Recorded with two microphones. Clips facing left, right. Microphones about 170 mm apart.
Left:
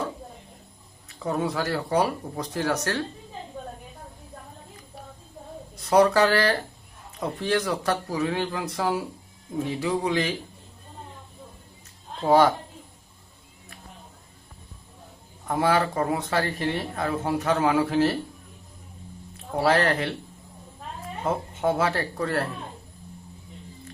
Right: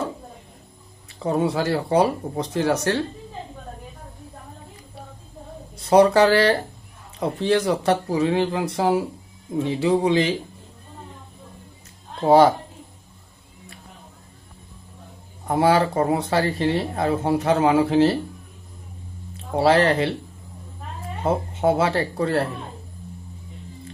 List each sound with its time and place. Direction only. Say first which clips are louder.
1.2 s speech: right 5 dB; 30° right (ahead or behind)
5.7 s speech: right 4 dB; 25° right (ahead or behind)
12.2 s speech: right 4 dB; 30° right (ahead or behind)
15.4 s speech: right 4 dB; 30° right (ahead or behind)
19.5 s speech: right 5 dB; 25° right (ahead or behind)
21.2 s speech: right 5 dB; 25° right (ahead or behind)